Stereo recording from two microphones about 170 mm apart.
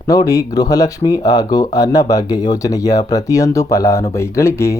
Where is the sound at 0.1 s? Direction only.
20° left (ahead or behind).